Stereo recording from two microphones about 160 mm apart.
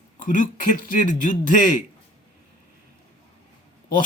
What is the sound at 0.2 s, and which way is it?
Speech, 55° left (ahead or behind).